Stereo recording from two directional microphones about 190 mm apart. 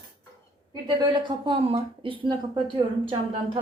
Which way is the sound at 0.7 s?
25° right (ahead or behind).